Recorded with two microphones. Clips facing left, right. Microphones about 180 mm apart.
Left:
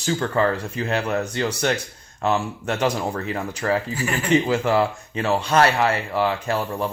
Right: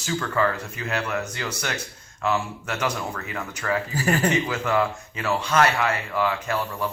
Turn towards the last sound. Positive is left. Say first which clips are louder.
# left 3 dB
turn(degrees=35)  # may be behind; listen again after turning